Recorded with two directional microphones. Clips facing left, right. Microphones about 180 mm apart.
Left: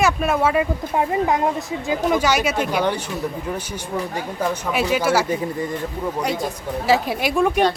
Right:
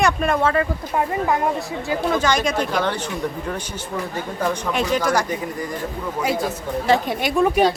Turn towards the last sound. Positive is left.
turn(degrees=-5)  # may be behind; listen again after turning